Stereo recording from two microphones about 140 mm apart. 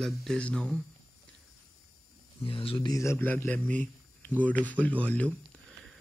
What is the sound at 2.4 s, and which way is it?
Speech, 40° left (ahead or behind).